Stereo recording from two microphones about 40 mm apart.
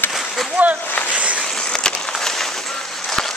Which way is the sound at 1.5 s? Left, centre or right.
Centre.